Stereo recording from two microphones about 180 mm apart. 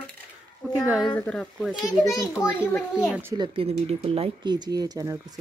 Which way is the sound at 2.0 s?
20° left (ahead or behind).